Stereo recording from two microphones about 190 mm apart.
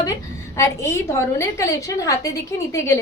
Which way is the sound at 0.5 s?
15° left (ahead or behind).